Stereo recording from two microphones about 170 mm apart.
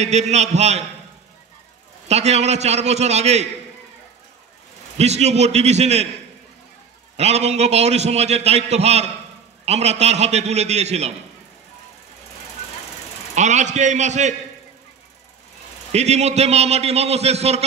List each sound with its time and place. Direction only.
0.0 s a man's voice: 40° right (ahead or behind)
2.0 s a man's voice: 40° right (ahead or behind)
4.9 s a man's voice: 40° right (ahead or behind)
7.2 s a man's voice: 40° right (ahead or behind)
13.3 s a man's voice: 45° right (ahead or behind)
15.9 s a man's voice: 40° right (ahead or behind)